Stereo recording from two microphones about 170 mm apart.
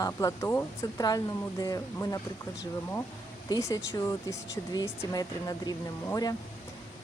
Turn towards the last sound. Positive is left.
turn(degrees=20)  # may be behind; listen again after turning